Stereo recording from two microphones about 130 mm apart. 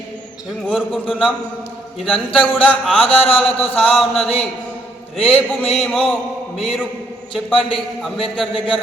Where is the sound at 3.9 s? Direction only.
Centre (ahead or behind).